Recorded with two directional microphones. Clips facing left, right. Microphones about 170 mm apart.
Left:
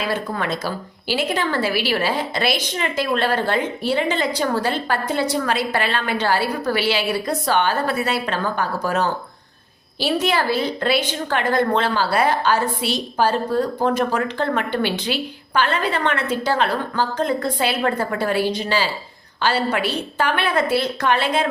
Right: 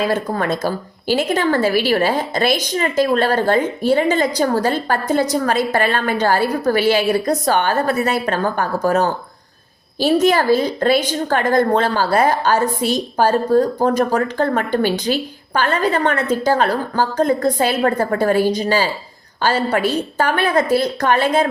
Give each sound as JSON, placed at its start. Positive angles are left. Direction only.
{"t": 0.0, "sound": "a woman's voice", "side_deg": -45}